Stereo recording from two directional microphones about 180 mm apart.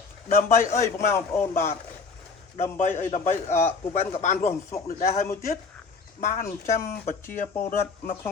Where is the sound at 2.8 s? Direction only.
45° left (ahead or behind).